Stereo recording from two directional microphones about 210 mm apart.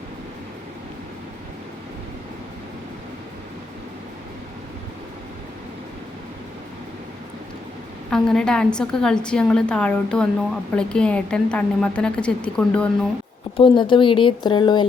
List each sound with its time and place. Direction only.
8.1 s a woman's voice: 5° left (ahead or behind)
13.6 s speech: 25° left (ahead or behind)